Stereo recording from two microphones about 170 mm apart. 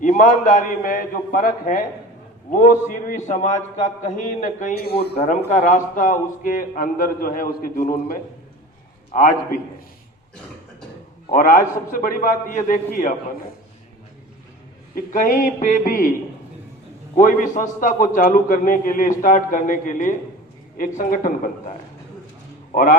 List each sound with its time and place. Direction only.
0.0 s a man's voice: 45° left (ahead or behind)
4.7 s speech: 65° left (ahead or behind)
5.1 s a man's voice: 40° left (ahead or behind)
11.3 s a man's voice: 50° left (ahead or behind)
14.9 s a man's voice: 55° left (ahead or behind)
17.2 s a man's voice: 50° left (ahead or behind)
22.7 s speech: 50° left (ahead or behind)